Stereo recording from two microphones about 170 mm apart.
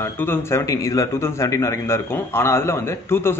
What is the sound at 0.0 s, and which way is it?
A man's voice, 15° left (ahead or behind).